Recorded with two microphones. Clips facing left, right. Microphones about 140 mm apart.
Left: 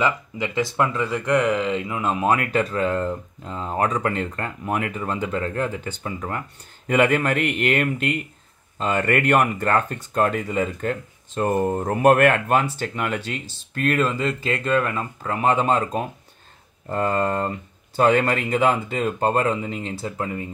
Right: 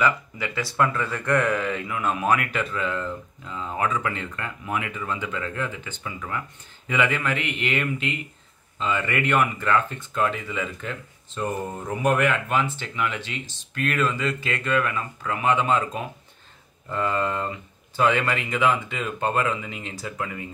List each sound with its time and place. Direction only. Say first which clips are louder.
0.0 s speech: left 1 dB; 20° left (ahead or behind)